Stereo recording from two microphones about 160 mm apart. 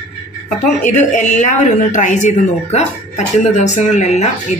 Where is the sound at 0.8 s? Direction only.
50° left (ahead or behind).